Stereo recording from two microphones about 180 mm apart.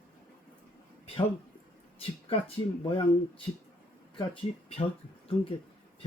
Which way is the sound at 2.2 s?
30° left (ahead or behind).